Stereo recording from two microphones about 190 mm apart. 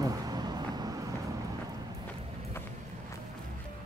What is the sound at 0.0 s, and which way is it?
Vehicle, 20° right (ahead or behind).